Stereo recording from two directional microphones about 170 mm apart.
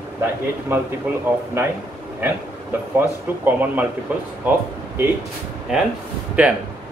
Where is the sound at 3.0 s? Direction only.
10° right (ahead or behind).